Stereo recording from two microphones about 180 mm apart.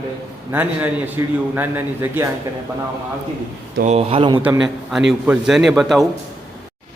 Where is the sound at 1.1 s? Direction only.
10° right (ahead or behind).